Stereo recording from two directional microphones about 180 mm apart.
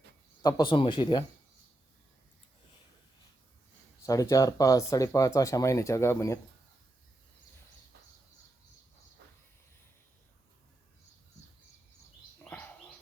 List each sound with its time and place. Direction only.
0.4 s speech: 25° left (ahead or behind)
4.0 s speech: 20° left (ahead or behind)
12.5 s bird: 10° left (ahead or behind)